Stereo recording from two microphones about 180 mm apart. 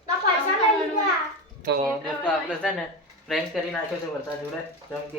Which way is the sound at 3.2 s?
Centre (ahead or behind).